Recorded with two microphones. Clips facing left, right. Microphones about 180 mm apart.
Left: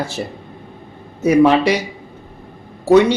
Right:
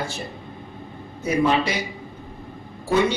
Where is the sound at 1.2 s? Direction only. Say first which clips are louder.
Left 9 dB; 80° left.